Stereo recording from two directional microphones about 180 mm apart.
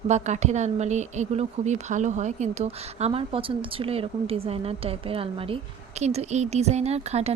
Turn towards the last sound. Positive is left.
turn(degrees=-35)  # may be behind; listen again after turning